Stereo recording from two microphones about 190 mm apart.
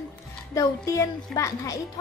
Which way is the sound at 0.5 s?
15° left (ahead or behind).